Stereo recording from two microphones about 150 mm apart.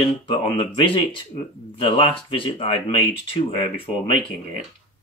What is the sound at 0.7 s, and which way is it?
Speech, 35° left (ahead or behind).